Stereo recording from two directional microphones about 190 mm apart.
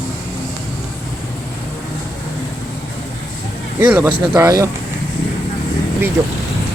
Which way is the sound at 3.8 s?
10° right (ahead or behind).